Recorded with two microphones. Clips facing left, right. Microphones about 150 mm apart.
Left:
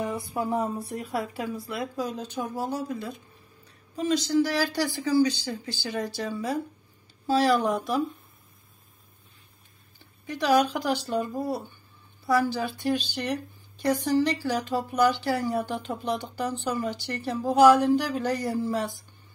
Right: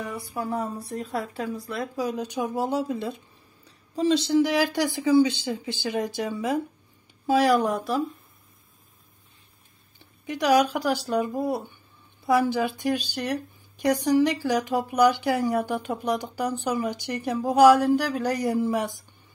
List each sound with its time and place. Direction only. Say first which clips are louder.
0.0 s a sound: left 2 dB; 20° left (ahead or behind)
0.9 s speech: right 1 dB; 5° left (ahead or behind)
2.0 s speech: right 3 dB; 10° right (ahead or behind)
7.7 s speech: right 1 dB; centre (ahead or behind)
10.2 s speech: right 2 dB; 15° right (ahead or behind)
11.3 s speech: right 3 dB; 20° right (ahead or behind)